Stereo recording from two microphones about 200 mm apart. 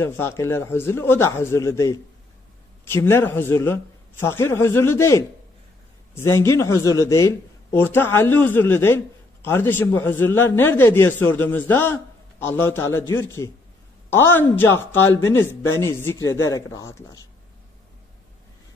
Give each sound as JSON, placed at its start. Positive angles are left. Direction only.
{"t": 0.0, "sound": "a man's voice", "side_deg": 10}
{"t": 6.2, "sound": "a man's voice", "side_deg": 15}